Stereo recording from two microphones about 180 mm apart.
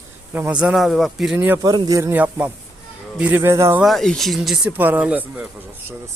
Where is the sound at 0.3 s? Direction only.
5° right (ahead or behind).